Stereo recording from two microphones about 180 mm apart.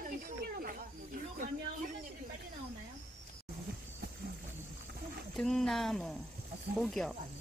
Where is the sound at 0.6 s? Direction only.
50° right (ahead or behind).